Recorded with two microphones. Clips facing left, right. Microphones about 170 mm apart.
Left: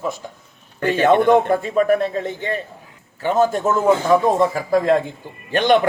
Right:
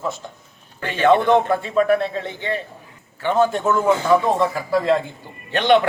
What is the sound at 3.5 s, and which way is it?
Speech, 40° left (ahead or behind).